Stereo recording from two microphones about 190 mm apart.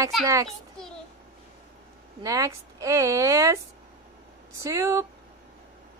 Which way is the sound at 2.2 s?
15° right (ahead or behind).